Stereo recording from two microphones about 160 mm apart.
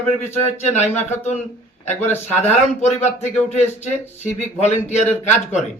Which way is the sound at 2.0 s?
15° left (ahead or behind).